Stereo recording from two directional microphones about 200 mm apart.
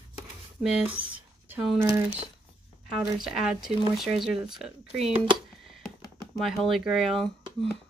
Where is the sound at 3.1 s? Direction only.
Centre (ahead or behind).